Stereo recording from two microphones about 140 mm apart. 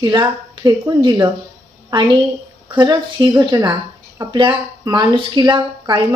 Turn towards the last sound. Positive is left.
turn(degrees=-30)  # may be behind; listen again after turning